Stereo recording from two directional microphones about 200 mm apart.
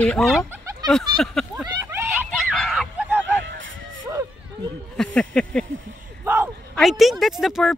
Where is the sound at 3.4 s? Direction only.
70° right (ahead or behind).